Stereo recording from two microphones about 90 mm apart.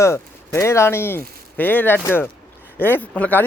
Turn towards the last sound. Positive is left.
turn(degrees=15)  # may be behind; listen again after turning